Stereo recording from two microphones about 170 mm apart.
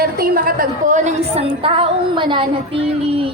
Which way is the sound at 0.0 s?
60° right (ahead or behind).